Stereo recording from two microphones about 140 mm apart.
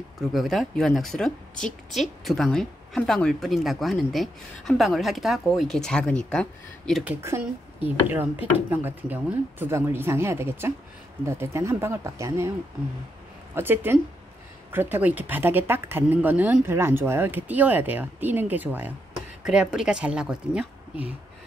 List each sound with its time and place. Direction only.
0.3 s a woman's voice: centre (ahead or behind)
7.1 s speech: 20° right (ahead or behind)
13.6 s speech: 15° right (ahead or behind)